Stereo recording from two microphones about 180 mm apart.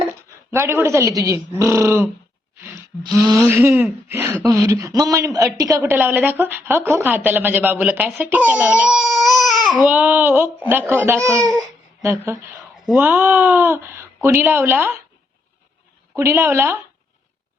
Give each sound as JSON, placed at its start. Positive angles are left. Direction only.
{"t": 0.5, "sound": "speech", "side_deg": -15}
{"t": 3.4, "sound": "a man's voice", "side_deg": -15}
{"t": 16.1, "sound": "speech", "side_deg": -15}